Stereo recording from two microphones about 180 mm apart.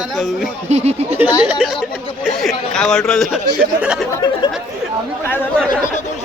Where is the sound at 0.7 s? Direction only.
35° right (ahead or behind).